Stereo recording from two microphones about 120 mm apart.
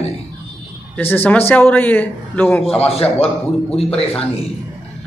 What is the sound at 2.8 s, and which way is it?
Speech, 55° left (ahead or behind).